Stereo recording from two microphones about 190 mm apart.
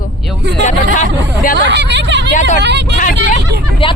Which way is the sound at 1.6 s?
65° right (ahead or behind).